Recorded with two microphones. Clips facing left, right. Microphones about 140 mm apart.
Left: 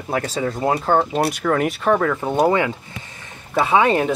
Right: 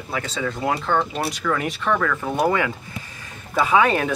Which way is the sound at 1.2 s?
50° left (ahead or behind).